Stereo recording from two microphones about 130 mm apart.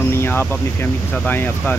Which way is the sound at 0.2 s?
15° left (ahead or behind).